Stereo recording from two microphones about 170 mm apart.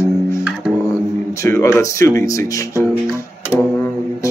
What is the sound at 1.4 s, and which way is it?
Speech, 15° left (ahead or behind).